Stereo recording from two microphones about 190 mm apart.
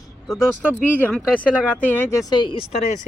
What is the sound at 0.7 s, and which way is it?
Speech, 10° left (ahead or behind).